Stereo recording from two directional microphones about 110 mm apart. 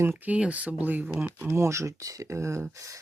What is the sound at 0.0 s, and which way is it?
Speech, 15° right (ahead or behind).